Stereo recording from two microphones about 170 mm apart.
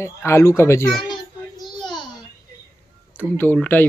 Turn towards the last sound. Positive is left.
turn(degrees=10)  # may be behind; listen again after turning